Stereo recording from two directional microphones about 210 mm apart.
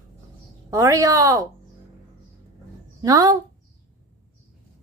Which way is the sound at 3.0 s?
15° right (ahead or behind).